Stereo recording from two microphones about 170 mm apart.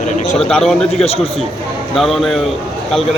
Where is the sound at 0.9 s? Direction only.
35° left (ahead or behind).